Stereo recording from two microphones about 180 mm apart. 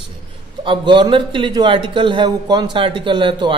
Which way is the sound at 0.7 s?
25° right (ahead or behind).